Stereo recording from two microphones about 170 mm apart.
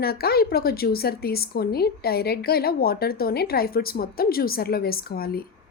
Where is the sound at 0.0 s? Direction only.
65° left (ahead or behind).